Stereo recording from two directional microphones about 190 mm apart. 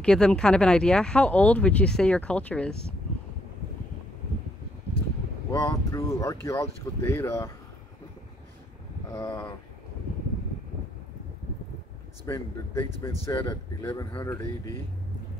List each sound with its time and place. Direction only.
0.0 s speech: 5° left (ahead or behind)
5.5 s speech: 15° left (ahead or behind)
9.1 s speech: 10° left (ahead or behind)
12.3 s speech: 15° left (ahead or behind)